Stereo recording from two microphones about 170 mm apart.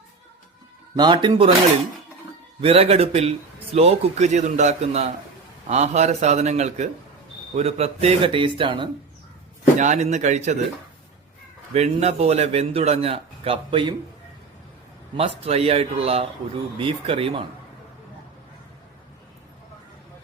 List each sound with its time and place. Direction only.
0.9 s speech: 25° right (ahead or behind)
2.6 s a man's voice: 35° right (ahead or behind)
9.7 s speech: 45° right (ahead or behind)
11.7 s a man's voice: 40° right (ahead or behind)
15.1 s a man's voice: 35° right (ahead or behind)